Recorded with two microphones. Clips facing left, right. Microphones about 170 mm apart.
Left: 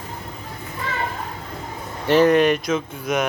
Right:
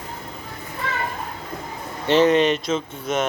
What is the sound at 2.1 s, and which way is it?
Speech, 20° right (ahead or behind).